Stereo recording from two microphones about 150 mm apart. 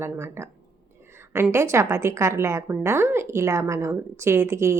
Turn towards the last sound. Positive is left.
turn(degrees=-15)  # may be behind; listen again after turning